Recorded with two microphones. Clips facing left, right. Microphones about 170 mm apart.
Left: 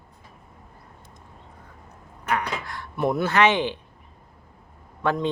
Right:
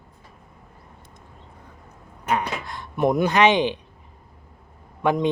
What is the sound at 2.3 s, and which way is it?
Speech, 20° right (ahead or behind).